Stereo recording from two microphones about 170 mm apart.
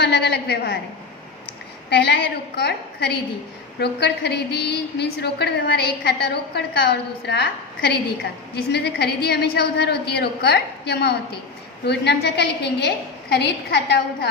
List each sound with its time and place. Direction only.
0.0 s a woman's voice: 80° left
1.9 s a woman's voice: 75° left (ahead or behind)